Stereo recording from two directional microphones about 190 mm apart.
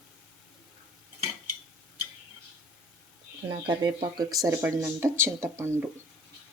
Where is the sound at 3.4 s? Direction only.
25° right (ahead or behind).